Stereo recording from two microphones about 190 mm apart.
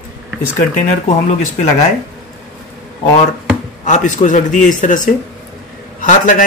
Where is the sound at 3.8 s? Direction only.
40° left (ahead or behind).